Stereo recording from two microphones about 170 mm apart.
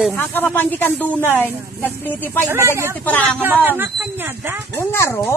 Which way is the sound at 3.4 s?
10° right (ahead or behind).